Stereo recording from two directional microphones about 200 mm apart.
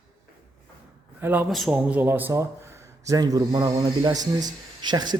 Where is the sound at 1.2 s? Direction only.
10° right (ahead or behind).